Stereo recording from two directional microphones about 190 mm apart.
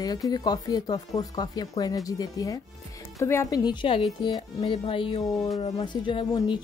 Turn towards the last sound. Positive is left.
turn(degrees=25)  # may be behind; listen again after turning